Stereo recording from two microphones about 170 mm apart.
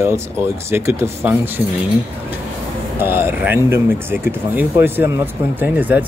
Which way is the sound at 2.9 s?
15° right (ahead or behind).